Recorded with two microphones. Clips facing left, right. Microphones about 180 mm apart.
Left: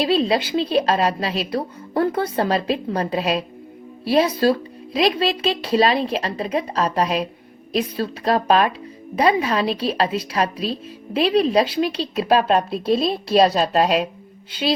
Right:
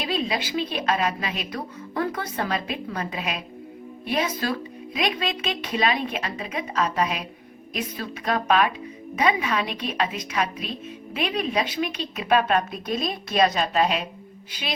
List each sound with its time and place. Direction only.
0.0 s a woman's voice: 30° left (ahead or behind)